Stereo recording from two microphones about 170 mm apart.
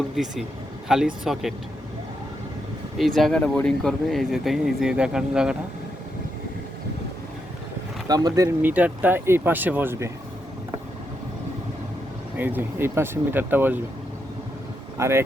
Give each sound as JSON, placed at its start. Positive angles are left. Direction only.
{"t": 0.2, "sound": "speech", "side_deg": 0}
{"t": 3.0, "sound": "speech", "side_deg": 0}
{"t": 8.0, "sound": "speech", "side_deg": -20}
{"t": 12.4, "sound": "speech", "side_deg": -10}
{"t": 14.9, "sound": "speech", "side_deg": -15}